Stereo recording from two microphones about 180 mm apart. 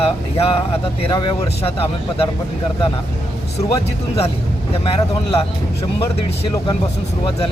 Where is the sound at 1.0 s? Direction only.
25° left (ahead or behind).